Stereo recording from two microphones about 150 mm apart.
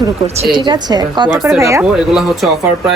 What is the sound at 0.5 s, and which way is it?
A woman's voice, 30° right (ahead or behind).